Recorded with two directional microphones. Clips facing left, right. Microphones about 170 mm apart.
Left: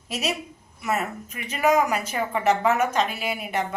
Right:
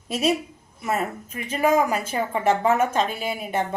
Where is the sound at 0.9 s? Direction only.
30° right (ahead or behind).